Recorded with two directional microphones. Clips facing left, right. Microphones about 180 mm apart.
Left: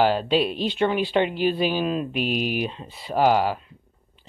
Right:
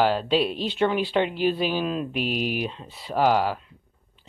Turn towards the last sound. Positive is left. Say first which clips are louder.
# left 2 dB
turn(degrees=5)  # may be behind; listen again after turning